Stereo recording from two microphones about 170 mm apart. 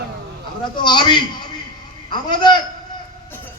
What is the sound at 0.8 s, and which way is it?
A man's voice, 25° left (ahead or behind).